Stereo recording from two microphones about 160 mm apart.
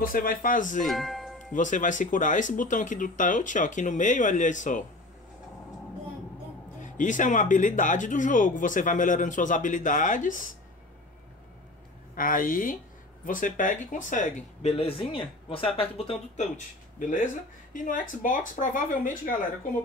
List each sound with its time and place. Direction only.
0.0 s speech: 60° left (ahead or behind)
0.8 s music: centre (ahead or behind)
1.5 s speech: 55° left (ahead or behind)
6.8 s speech: 55° left (ahead or behind)
12.2 s speech: 60° left (ahead or behind)